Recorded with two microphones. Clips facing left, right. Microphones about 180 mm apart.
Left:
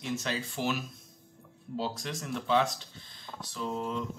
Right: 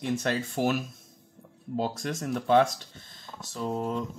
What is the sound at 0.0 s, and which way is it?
Speech, 55° right (ahead or behind).